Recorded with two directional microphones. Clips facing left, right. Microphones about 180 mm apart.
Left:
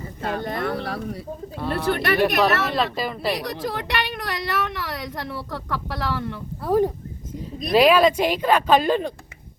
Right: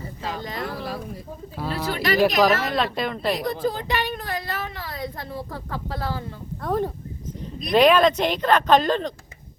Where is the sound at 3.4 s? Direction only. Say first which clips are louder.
Right 3 dB; 75° left (ahead or behind).